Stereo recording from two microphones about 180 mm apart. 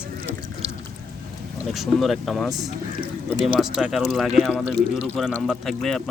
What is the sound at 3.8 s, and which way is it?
Speech, centre (ahead or behind).